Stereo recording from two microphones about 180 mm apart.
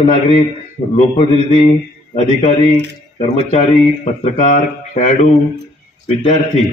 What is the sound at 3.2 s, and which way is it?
Speech, 35° left (ahead or behind).